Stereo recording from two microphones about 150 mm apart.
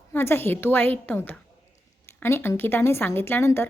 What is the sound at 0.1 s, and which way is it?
A woman's voice, 15° left (ahead or behind).